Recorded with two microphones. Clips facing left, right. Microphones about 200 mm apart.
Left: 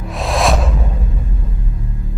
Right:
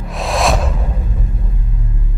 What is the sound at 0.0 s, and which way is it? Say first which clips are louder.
Music: even; centre (ahead or behind).